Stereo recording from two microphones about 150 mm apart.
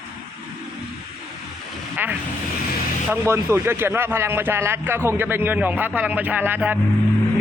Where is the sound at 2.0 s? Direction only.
15° right (ahead or behind).